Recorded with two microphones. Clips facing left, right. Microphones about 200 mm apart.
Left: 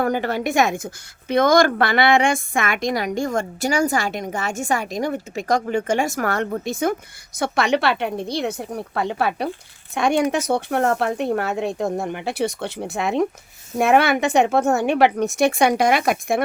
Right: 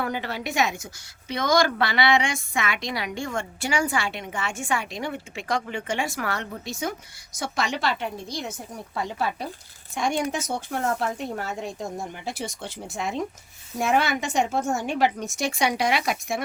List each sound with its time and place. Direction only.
0.0 s a woman's voice: 45° left (ahead or behind)